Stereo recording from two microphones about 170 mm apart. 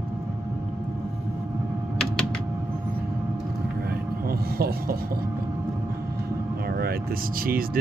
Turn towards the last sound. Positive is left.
turn(degrees=-60)  # may be behind; listen again after turning